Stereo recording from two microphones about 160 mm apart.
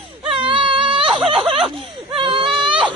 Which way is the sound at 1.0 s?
Centre (ahead or behind).